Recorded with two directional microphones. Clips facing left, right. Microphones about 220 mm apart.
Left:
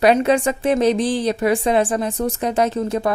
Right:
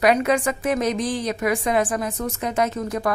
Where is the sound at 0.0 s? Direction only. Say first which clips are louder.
Left 4 dB; 30° left (ahead or behind).